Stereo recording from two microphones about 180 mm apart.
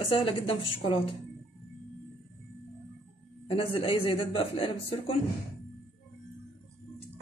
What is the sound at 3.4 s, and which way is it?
A man's voice, 30° left (ahead or behind).